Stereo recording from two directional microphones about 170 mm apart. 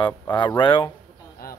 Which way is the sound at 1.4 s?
55° left (ahead or behind).